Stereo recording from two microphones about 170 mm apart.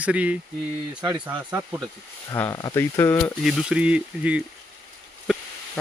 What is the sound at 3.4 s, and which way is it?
Speech, centre (ahead or behind).